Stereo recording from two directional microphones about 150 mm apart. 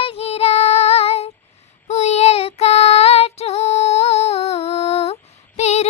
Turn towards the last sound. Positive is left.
turn(degrees=45)  # may be behind; listen again after turning